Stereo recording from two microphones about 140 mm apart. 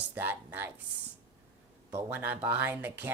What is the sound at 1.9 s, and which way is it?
Speech, 15° right (ahead or behind).